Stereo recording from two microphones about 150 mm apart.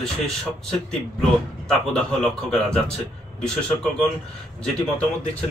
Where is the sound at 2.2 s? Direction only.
5° left (ahead or behind).